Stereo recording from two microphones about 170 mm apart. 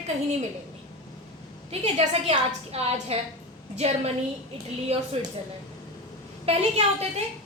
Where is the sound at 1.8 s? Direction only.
40° right (ahead or behind).